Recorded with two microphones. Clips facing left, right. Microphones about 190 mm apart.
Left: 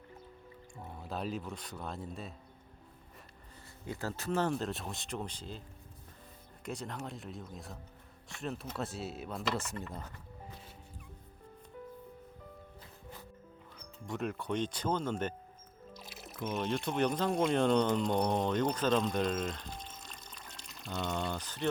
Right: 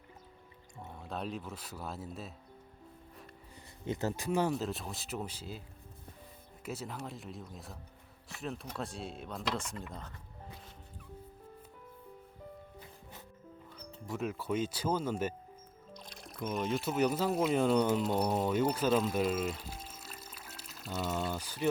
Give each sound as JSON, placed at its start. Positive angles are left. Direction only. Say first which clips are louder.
{"t": 0.9, "sound": "speech", "louder": "left 1 dB", "side_deg": 0}
{"t": 3.8, "sound": "speech", "louder": "right 3 dB", "side_deg": -20}
{"t": 6.7, "sound": "speech", "louder": "even", "side_deg": -5}
{"t": 13.7, "sound": "speech", "louder": "even", "side_deg": 0}
{"t": 16.0, "sound": "speech", "louder": "even", "side_deg": 5}